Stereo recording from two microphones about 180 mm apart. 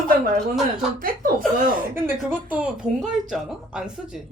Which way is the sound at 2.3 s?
10° right (ahead or behind).